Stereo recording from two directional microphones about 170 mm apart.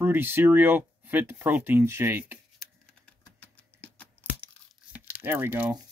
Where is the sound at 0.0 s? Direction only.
10° right (ahead or behind).